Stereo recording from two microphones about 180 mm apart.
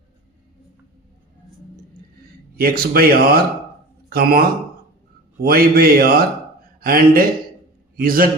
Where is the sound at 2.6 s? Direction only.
55° right (ahead or behind).